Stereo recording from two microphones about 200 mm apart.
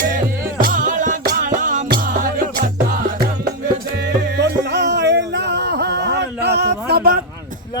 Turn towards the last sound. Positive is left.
turn(degrees=-50)  # may be behind; listen again after turning